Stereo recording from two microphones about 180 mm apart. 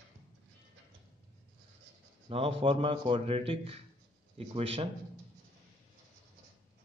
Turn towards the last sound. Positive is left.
turn(degrees=-35)  # may be behind; listen again after turning